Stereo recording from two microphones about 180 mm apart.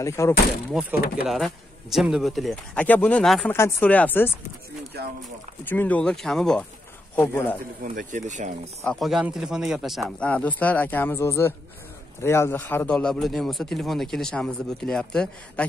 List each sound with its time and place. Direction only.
0.0 s speech: 15° left (ahead or behind)
0.7 s a man's voice: 5° right (ahead or behind)
5.7 s a man's voice: 10° left (ahead or behind)
7.8 s speech: 50° right (ahead or behind)
8.8 s a man's voice: centre (ahead or behind)